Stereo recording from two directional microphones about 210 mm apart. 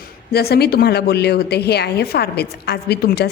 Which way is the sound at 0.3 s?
50° left (ahead or behind).